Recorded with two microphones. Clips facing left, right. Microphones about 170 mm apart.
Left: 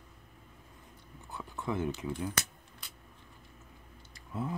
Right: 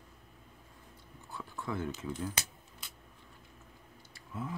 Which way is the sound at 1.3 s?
20° left (ahead or behind).